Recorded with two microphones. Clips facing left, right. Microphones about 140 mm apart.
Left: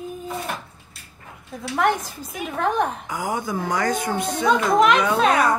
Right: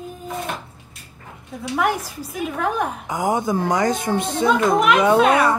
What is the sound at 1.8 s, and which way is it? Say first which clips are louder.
A woman's voice: left 1 dB; 10° right (ahead or behind).